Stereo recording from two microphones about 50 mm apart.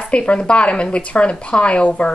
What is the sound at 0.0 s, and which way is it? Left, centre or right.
Speech, left.